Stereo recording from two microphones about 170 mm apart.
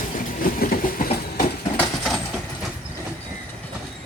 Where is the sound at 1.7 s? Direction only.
Centre (ahead or behind).